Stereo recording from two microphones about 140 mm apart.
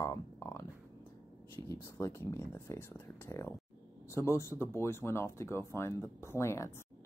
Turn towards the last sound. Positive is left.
turn(degrees=20)  # may be behind; listen again after turning